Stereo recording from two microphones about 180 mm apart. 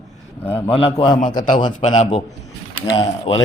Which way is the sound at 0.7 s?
30° left (ahead or behind).